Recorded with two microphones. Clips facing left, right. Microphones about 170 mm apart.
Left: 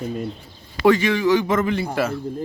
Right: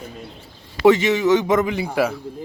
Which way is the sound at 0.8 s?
20° right (ahead or behind).